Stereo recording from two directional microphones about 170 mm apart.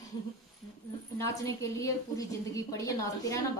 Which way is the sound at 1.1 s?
20° left (ahead or behind).